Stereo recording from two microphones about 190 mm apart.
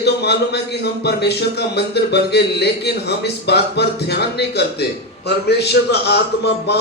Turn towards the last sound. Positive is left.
turn(degrees=60)  # may be behind; listen again after turning